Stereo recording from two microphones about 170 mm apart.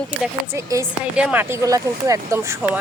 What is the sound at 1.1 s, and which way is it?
Speech, 10° right (ahead or behind).